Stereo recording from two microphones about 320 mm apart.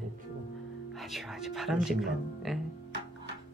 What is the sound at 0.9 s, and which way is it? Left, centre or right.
Speech, centre.